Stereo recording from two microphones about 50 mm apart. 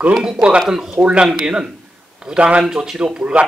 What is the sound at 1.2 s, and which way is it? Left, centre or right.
A man's voice, centre.